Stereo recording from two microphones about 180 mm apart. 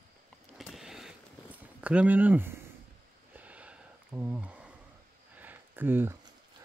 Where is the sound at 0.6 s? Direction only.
Centre (ahead or behind).